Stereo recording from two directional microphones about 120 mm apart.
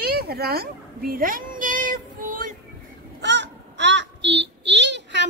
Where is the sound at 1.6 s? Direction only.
90° right.